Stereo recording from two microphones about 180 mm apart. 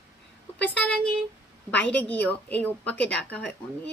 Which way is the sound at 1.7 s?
10° left (ahead or behind).